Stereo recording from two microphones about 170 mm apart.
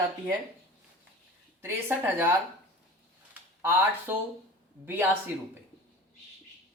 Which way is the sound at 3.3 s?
15° right (ahead or behind).